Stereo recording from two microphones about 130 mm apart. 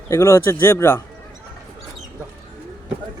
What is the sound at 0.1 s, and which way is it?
Speech, 20° left (ahead or behind).